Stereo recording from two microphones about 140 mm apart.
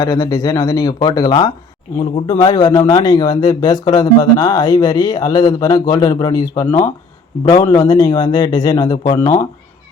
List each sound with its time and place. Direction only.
0.0 s speech: 20° left (ahead or behind)